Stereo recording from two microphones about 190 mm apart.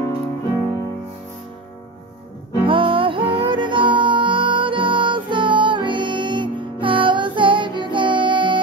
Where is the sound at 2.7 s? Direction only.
25° right (ahead or behind).